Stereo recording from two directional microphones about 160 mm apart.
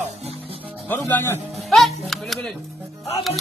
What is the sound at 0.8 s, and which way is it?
Speech, 10° left (ahead or behind).